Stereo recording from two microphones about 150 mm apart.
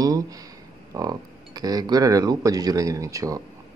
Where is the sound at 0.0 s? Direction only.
25° right (ahead or behind).